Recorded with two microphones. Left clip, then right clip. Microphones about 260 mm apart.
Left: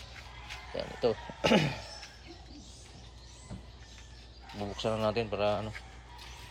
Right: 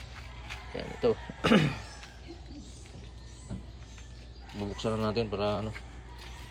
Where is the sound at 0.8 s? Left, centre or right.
Centre.